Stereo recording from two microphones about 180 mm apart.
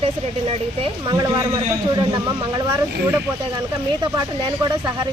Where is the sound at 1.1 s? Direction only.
20° right (ahead or behind).